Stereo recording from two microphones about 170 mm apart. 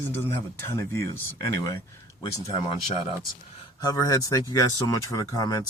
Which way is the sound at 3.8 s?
20° left (ahead or behind).